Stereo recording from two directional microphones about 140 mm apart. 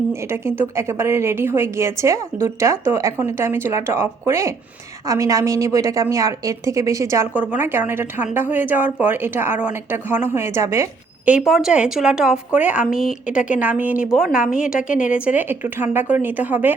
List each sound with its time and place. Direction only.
0.1 s a woman's voice: 20° right (ahead or behind)
11.3 s a woman's voice: 5° right (ahead or behind)